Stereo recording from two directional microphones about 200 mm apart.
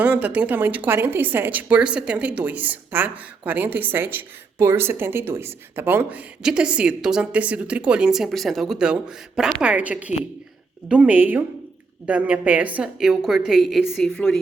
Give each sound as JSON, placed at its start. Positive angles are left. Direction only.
{"t": 0.0, "sound": "a woman's voice", "side_deg": -5}